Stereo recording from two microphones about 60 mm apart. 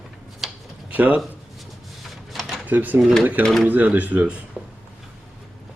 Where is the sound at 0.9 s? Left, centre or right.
Right.